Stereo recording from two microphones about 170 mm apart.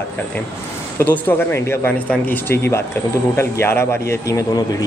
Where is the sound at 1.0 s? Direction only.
10° left (ahead or behind).